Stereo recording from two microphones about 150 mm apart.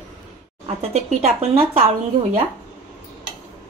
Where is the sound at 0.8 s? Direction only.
45° right (ahead or behind).